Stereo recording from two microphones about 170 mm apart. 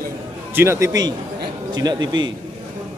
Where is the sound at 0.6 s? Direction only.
15° right (ahead or behind).